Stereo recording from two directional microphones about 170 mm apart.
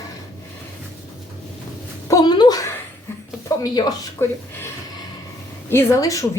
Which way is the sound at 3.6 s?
20° left (ahead or behind).